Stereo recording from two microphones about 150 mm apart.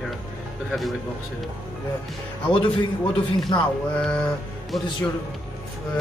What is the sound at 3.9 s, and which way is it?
Mantra, 5° left (ahead or behind).